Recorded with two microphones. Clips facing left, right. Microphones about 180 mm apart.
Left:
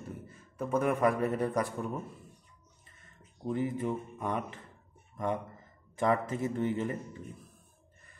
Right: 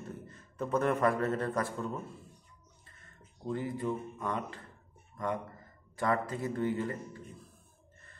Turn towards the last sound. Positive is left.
turn(degrees=20)  # may be behind; listen again after turning